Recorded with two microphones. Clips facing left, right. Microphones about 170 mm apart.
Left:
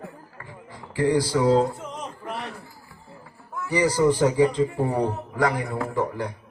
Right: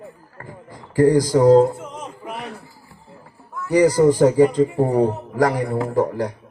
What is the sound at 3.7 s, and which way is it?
A man's voice, 45° right (ahead or behind).